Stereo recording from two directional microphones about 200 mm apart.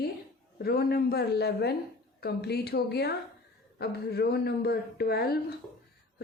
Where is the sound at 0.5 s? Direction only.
50° left (ahead or behind).